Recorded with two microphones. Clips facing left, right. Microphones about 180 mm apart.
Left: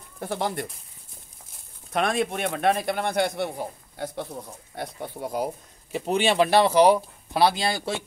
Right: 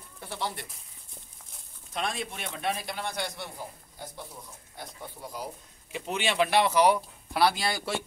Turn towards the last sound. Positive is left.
turn(degrees=25)  # may be behind; listen again after turning